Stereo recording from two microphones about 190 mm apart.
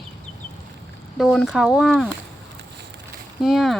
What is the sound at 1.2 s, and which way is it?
Speech, centre (ahead or behind).